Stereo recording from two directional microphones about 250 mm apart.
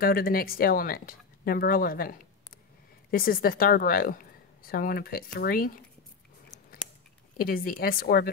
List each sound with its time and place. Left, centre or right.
0.0 s a woman's voice: left
7.3 s a woman's voice: left